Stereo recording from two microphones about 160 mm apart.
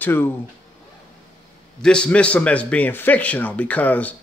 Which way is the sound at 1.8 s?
5° left (ahead or behind).